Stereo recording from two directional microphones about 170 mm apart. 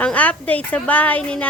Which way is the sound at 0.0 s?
10° left (ahead or behind).